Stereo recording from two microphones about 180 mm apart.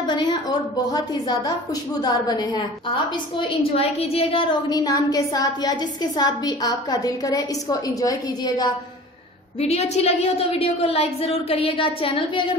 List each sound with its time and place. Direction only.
0.0 s a woman's voice: 25° left (ahead or behind)
9.6 s a woman's voice: 35° left (ahead or behind)